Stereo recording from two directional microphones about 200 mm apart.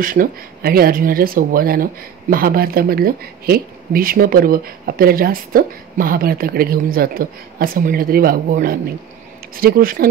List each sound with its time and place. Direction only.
0.0 s speech: 45° right (ahead or behind)